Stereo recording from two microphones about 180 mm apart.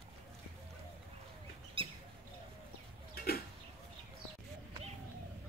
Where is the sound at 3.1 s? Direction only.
55° left (ahead or behind).